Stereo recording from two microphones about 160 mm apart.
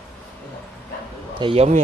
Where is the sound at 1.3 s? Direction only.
35° right (ahead or behind).